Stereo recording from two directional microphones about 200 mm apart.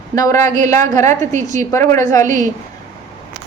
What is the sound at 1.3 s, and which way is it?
Speech, 35° right (ahead or behind).